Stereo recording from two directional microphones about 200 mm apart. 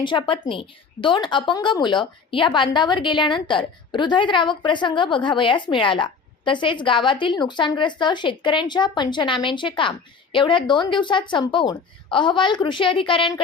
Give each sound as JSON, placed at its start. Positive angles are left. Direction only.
{"t": 0.0, "sound": "a woman's voice", "side_deg": 25}